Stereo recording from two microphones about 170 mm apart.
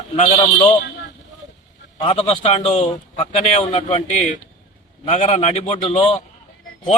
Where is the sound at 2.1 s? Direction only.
40° left (ahead or behind).